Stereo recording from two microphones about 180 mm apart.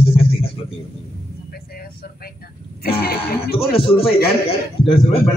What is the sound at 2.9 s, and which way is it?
Speech, 60° left (ahead or behind).